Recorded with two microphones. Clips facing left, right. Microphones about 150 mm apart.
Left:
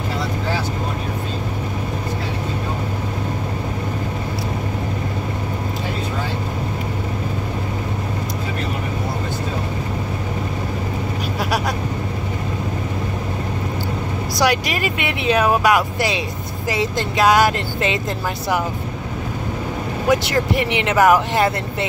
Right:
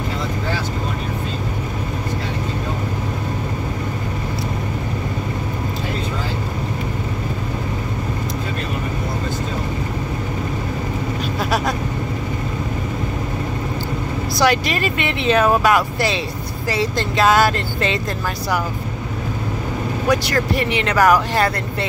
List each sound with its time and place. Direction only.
14.4 s speech: 10° left (ahead or behind)
20.1 s speech: 20° left (ahead or behind)